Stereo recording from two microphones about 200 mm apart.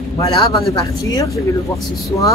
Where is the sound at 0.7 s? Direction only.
15° left (ahead or behind).